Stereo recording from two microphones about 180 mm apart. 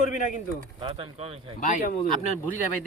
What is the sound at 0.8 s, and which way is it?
Speech, 30° right (ahead or behind).